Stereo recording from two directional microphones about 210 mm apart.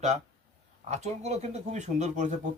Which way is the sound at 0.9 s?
30° right (ahead or behind).